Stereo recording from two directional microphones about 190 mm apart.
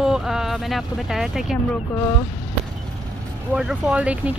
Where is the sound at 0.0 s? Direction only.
5° right (ahead or behind).